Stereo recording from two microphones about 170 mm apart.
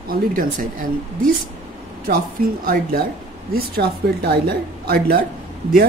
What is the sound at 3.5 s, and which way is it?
Speech, 70° right (ahead or behind).